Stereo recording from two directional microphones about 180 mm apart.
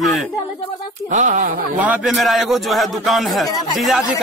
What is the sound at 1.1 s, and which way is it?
Speech, 45° right (ahead or behind).